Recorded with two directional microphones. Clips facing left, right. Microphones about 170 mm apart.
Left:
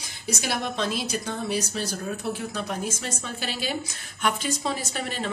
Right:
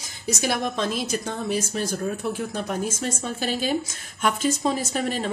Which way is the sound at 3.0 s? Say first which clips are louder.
Right 5 dB; 45° right (ahead or behind).